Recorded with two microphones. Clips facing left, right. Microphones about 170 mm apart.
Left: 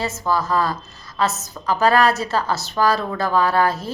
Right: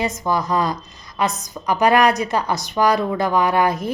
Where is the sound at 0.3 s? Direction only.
20° right (ahead or behind).